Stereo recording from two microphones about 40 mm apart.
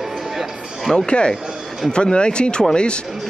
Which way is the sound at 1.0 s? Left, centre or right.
Left.